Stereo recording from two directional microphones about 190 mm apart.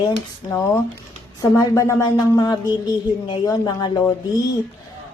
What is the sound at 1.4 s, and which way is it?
Speech, 15° left (ahead or behind).